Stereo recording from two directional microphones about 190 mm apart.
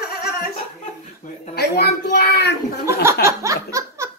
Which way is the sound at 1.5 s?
60° left (ahead or behind).